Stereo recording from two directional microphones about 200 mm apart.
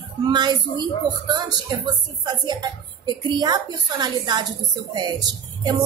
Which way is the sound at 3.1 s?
20° right (ahead or behind).